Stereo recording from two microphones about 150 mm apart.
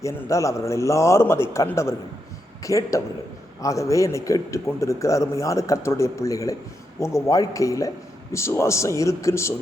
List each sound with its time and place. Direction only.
0.0 s a man's voice: 20° left (ahead or behind)